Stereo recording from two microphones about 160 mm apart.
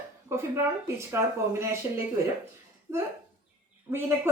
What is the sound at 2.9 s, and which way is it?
A woman's voice, 15° right (ahead or behind).